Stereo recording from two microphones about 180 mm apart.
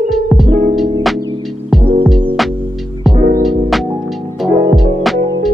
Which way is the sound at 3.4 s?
Centre (ahead or behind).